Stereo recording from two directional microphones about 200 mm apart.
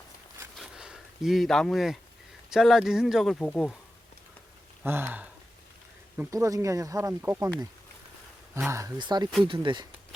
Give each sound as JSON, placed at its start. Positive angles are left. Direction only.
{"t": 0.5, "sound": "a sound", "side_deg": -5}
{"t": 2.5, "sound": "speech", "side_deg": 0}
{"t": 4.9, "sound": "speech", "side_deg": -10}
{"t": 8.7, "sound": "speech", "side_deg": -15}